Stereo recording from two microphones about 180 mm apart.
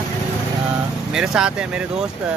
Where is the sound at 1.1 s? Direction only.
5° right (ahead or behind).